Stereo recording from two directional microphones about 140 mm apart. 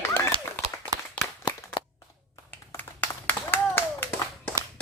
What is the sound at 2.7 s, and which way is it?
Clapping, 15° left (ahead or behind).